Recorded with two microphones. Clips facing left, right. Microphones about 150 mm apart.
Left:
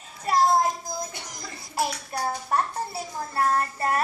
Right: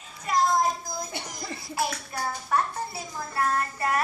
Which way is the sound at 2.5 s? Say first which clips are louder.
Right 1 dB; 35° left (ahead or behind).